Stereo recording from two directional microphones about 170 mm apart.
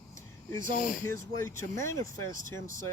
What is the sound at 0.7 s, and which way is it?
Speech, 50° left (ahead or behind).